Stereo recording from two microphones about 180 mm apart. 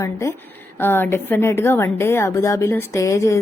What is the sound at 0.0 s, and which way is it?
Speech, 20° left (ahead or behind).